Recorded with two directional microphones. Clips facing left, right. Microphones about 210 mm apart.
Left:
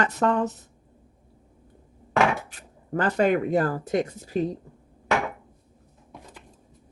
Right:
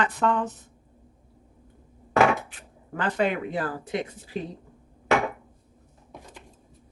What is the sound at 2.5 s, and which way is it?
Speech, 40° left (ahead or behind).